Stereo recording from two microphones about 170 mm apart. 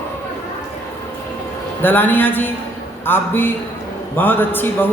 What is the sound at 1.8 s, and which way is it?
Speech, 10° left (ahead or behind).